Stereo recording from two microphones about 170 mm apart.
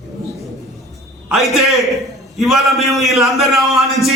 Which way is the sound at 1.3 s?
Centre (ahead or behind).